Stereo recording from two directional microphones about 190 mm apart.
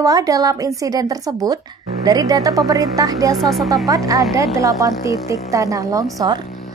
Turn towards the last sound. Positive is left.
turn(degrees=-20)  # may be behind; listen again after turning